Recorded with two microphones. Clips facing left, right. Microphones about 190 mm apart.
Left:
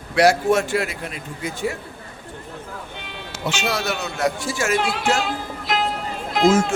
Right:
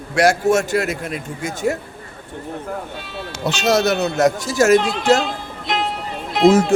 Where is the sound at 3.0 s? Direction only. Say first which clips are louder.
Right 5 dB; 15° left (ahead or behind).